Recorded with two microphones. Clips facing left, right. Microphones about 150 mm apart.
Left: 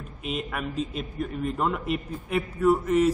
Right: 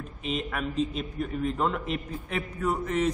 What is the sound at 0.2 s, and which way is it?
A woman's voice, 5° left (ahead or behind).